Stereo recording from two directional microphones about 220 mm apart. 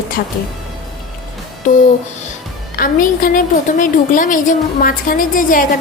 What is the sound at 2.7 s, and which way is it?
A woman's voice, 40° left (ahead or behind).